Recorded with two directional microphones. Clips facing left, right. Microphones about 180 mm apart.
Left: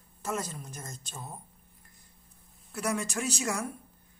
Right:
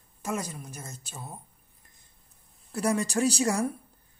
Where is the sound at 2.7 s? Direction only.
35° right (ahead or behind).